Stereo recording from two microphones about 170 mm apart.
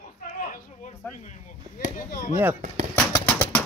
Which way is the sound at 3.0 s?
10° left (ahead or behind).